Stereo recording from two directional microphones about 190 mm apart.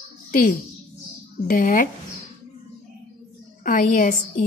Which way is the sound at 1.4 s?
50° left (ahead or behind).